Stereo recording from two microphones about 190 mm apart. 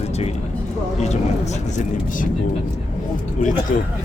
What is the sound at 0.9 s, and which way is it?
Speech, 35° left (ahead or behind).